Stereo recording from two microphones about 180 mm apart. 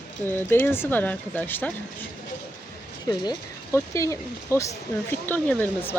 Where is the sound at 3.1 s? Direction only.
20° left (ahead or behind).